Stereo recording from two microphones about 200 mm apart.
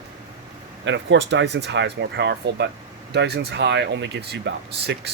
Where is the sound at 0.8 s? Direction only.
65° right (ahead or behind).